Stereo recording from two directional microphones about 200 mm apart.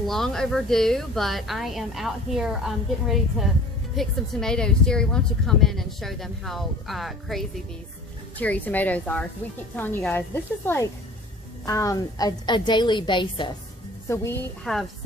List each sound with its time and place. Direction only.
0.0 s a woman's voice: centre (ahead or behind); by 13.6 s 25° left (ahead or behind)
14.0 s speech: 15° left (ahead or behind)